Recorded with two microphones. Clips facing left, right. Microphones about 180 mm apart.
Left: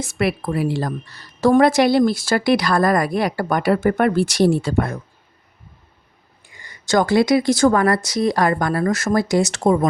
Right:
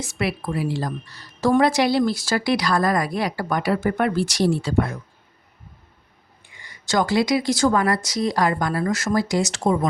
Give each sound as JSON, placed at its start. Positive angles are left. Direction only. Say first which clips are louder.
{"t": 0.0, "sound": "speech", "louder": "left 4 dB", "side_deg": 55}
{"t": 6.5, "sound": "speech", "louder": "left 5 dB", "side_deg": 45}